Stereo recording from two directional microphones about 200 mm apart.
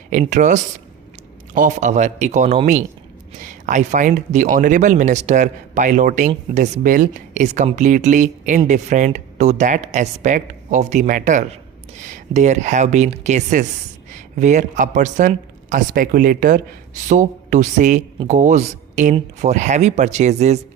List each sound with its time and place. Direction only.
0.1 s speech: 40° right (ahead or behind)